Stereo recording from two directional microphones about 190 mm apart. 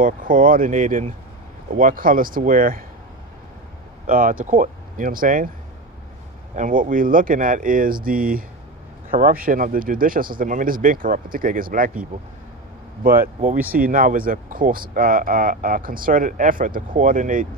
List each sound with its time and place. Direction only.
0.0 s speech: 45° right (ahead or behind)
4.1 s speech: 45° right (ahead or behind)
6.5 s speech: 45° right (ahead or behind)
13.0 s speech: 50° right (ahead or behind)